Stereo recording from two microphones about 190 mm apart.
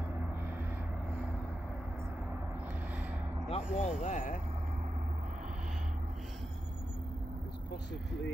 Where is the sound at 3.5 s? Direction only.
35° left (ahead or behind).